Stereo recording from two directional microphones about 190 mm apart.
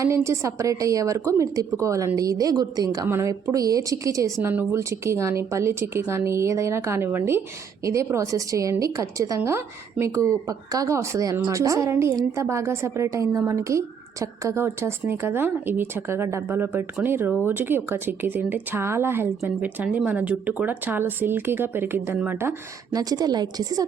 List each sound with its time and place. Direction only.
0.0 s a woman's voice: 15° right (ahead or behind)